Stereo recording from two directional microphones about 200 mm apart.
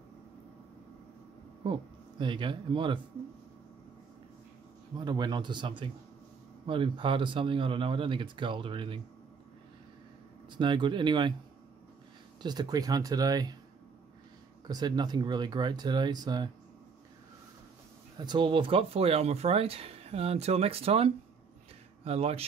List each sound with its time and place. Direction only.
1.6 s speech: 25° right (ahead or behind)
4.9 s speech: 20° right (ahead or behind)
10.6 s speech: 25° right (ahead or behind)
12.4 s speech: 20° right (ahead or behind)
14.7 s speech: 20° right (ahead or behind)
18.1 s speech: 20° right (ahead or behind)